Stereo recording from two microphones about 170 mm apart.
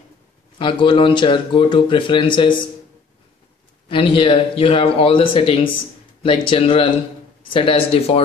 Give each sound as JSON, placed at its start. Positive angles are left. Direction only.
{"t": 0.6, "sound": "speech", "side_deg": 30}
{"t": 3.9, "sound": "speech", "side_deg": 30}